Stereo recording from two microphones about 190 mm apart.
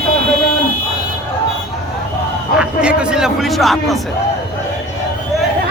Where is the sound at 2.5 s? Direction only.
5° right (ahead or behind).